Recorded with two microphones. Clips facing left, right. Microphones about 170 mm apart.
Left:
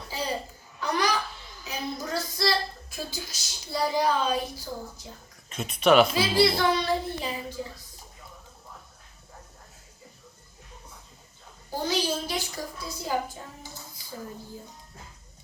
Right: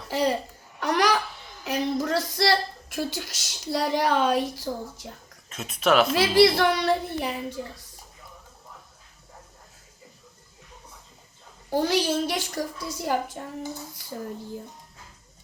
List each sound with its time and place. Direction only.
0.1 s a child's voice: 75° right (ahead or behind)
0.8 s a sound: 80° right
1.6 s a child's voice: 85° right
5.5 s speech: centre (ahead or behind)
6.1 s a woman's voice: 75° right (ahead or behind)
11.7 s a woman's voice: 70° right (ahead or behind)